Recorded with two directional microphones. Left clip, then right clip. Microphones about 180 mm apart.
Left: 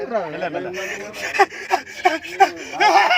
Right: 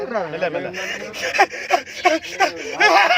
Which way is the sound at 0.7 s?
5° right (ahead or behind).